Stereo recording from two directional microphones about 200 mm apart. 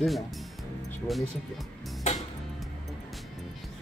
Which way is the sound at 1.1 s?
Centre (ahead or behind).